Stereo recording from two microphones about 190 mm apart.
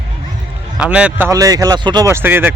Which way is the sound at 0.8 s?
5° right (ahead or behind).